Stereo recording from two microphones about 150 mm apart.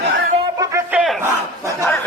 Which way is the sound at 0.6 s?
20° right (ahead or behind).